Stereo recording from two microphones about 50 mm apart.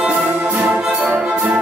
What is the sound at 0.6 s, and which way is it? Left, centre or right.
Orchestra, centre.